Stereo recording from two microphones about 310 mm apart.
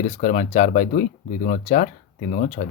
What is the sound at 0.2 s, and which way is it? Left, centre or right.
Speech, left.